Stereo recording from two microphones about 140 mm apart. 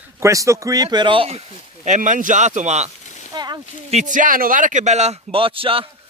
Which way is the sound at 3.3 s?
30° right (ahead or behind).